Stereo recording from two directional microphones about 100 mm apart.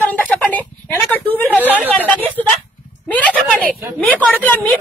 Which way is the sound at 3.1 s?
15° left (ahead or behind).